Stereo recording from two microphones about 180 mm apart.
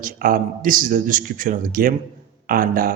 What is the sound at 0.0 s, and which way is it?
A man's voice, 50° right (ahead or behind).